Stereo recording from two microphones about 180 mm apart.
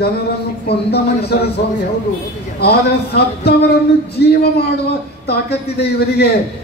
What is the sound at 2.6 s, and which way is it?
A man's voice, 65° left (ahead or behind).